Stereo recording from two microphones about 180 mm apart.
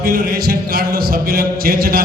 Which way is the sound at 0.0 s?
55° right (ahead or behind).